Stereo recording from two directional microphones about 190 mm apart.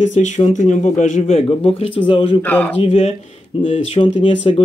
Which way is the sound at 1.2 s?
30° left (ahead or behind).